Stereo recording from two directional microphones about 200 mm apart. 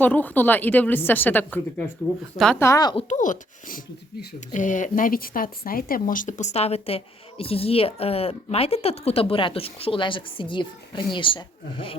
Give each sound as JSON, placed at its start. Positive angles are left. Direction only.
{"t": 0.0, "sound": "a woman's voice", "side_deg": 10}
{"t": 2.9, "sound": "speech", "side_deg": 40}